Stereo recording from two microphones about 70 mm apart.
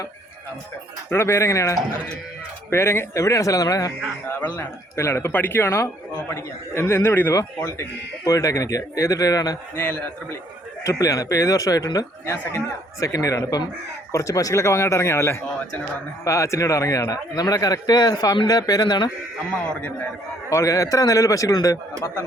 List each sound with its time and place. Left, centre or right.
1.1 s speech: left
4.4 s speech: left
4.9 s a man's voice: left
5.3 s a man's voice: left
7.3 s speech: left
9.7 s a man's voice: left
10.8 s speech: left
12.2 s a man's voice: left
13.0 s a man's voice: left
20.5 s speech: left